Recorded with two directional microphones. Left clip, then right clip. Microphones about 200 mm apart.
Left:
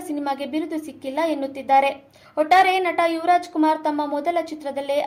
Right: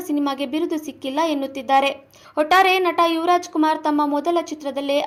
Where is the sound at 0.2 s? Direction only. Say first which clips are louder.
Right 1 dB; 30° right (ahead or behind).